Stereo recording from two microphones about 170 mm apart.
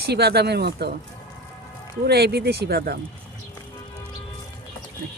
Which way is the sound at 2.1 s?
70° right (ahead or behind).